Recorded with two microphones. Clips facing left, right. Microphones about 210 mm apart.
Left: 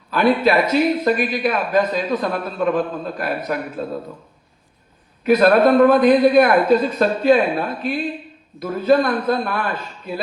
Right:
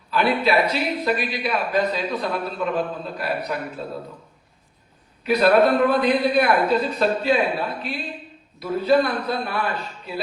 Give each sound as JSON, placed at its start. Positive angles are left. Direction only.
{"t": 0.1, "sound": "a man's voice", "side_deg": 45}
{"t": 5.2, "sound": "a man's voice", "side_deg": 45}